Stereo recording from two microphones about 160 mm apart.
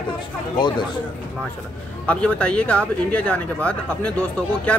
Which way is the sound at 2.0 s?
10° left (ahead or behind).